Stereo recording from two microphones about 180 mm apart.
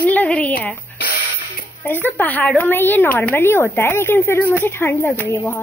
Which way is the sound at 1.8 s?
10° left (ahead or behind).